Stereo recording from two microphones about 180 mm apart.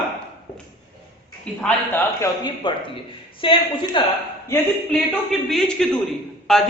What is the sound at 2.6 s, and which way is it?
A man's voice, 25° left (ahead or behind).